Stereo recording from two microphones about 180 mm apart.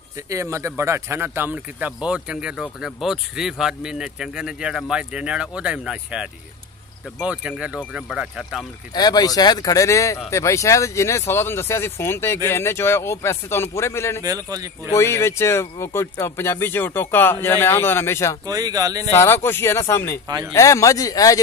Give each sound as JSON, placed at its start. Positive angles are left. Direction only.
{"t": 0.3, "sound": "speech", "side_deg": -15}
{"t": 8.9, "sound": "speech", "side_deg": 20}
{"t": 14.2, "sound": "speech", "side_deg": -20}
{"t": 14.9, "sound": "speech", "side_deg": 15}
{"t": 18.4, "sound": "speech", "side_deg": -20}
{"t": 19.1, "sound": "speech", "side_deg": 15}